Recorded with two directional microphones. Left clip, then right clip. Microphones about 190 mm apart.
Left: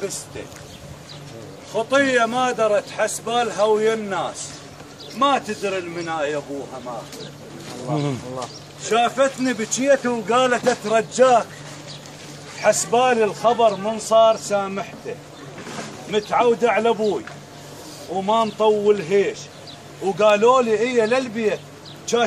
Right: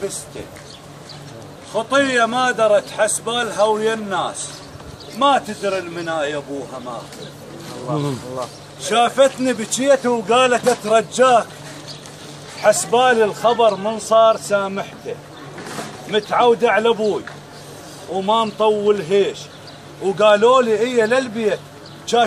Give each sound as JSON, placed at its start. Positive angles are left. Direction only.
{"t": 1.7, "sound": "a man's voice", "side_deg": 0}
{"t": 7.9, "sound": "speech", "side_deg": 25}
{"t": 8.8, "sound": "a man's voice", "side_deg": -40}
{"t": 12.6, "sound": "a man's voice", "side_deg": -10}
{"t": 16.1, "sound": "a man's voice", "side_deg": -5}
{"t": 18.2, "sound": "a man's voice", "side_deg": -10}